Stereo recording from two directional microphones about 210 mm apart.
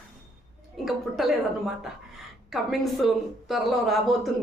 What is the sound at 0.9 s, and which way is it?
A woman's voice, centre (ahead or behind).